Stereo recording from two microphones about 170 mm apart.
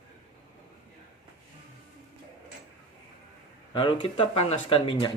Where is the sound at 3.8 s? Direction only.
30° left (ahead or behind).